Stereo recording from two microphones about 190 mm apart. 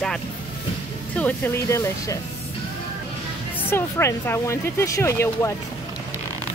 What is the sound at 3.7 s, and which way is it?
Speech, 15° left (ahead or behind).